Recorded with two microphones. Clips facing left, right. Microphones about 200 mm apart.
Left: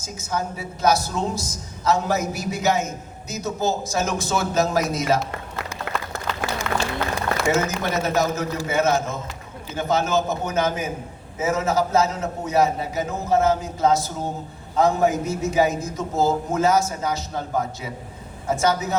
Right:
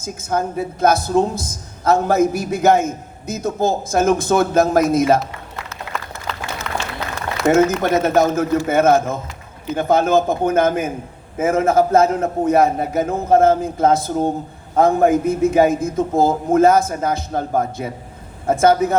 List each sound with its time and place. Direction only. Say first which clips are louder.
0.0 s a woman's voice: right 6 dB; 55° right (ahead or behind)
7.5 s a woman's voice: right 8 dB; 50° right (ahead or behind)